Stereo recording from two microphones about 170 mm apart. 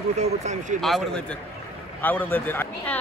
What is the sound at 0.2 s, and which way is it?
Speech, 40° right (ahead or behind).